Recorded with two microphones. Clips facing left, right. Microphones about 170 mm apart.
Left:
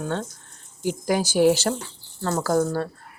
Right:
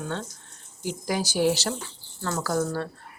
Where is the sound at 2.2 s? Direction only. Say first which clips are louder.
Left 5 dB; 35° left (ahead or behind).